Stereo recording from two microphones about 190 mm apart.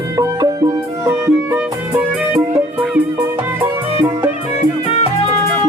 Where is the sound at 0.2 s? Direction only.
20° right (ahead or behind).